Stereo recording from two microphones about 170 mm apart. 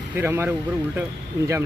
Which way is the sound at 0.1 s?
10° right (ahead or behind).